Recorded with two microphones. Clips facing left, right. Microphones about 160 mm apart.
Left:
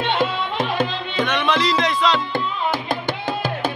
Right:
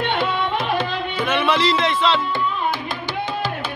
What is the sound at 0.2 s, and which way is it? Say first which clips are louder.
Music: even; 45° left (ahead or behind).